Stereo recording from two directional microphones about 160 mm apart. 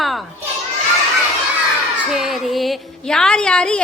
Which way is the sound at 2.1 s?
Centre (ahead or behind).